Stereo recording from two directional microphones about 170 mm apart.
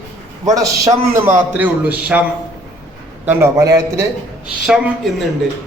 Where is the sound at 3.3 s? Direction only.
15° right (ahead or behind).